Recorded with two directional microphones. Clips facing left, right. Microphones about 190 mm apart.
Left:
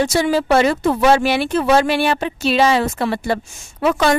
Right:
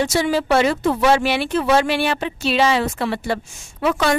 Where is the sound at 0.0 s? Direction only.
45° left (ahead or behind).